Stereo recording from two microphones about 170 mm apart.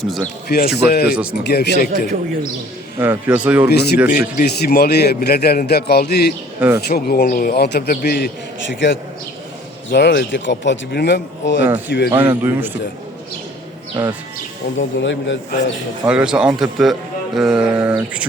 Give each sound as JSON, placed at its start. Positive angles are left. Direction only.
{"t": 0.4, "sound": "a man's voice", "side_deg": 65}
{"t": 1.1, "sound": "a man's voice", "side_deg": -5}
{"t": 1.5, "sound": "a man's voice", "side_deg": 75}
{"t": 3.0, "sound": "a man's voice", "side_deg": -10}
{"t": 3.7, "sound": "a man's voice", "side_deg": 75}
{"t": 4.1, "sound": "a man's voice", "side_deg": 60}
{"t": 6.6, "sound": "a man's voice", "side_deg": -15}
{"t": 6.8, "sound": "a man's voice", "side_deg": 65}
{"t": 12.1, "sound": "a man's voice", "side_deg": -15}
{"t": 14.8, "sound": "speech", "side_deg": 90}
{"t": 16.0, "sound": "speech", "side_deg": -5}